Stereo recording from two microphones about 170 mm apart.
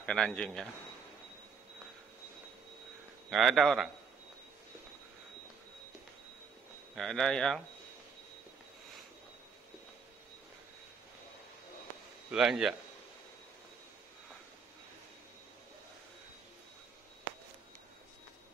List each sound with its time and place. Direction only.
0.0 s a man's voice: 5° left (ahead or behind)
3.3 s a man's voice: centre (ahead or behind)
7.0 s a man's voice: centre (ahead or behind)
12.3 s a man's voice: 5° right (ahead or behind)